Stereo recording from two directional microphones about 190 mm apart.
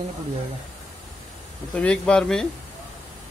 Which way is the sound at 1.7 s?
5° left (ahead or behind).